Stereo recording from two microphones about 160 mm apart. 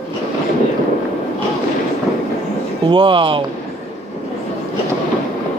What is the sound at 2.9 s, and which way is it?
Speech, 30° right (ahead or behind).